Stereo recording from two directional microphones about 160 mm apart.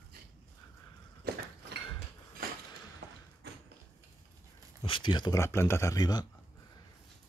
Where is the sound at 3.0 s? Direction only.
90° right.